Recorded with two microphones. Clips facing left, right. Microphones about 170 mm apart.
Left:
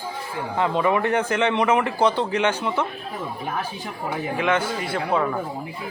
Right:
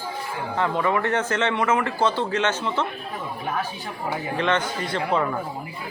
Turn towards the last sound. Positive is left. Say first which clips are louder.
# left 1 dB
turn(degrees=5)  # may be behind; listen again after turning